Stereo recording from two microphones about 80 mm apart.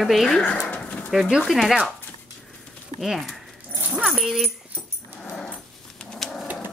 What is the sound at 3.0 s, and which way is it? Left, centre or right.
Speech, centre.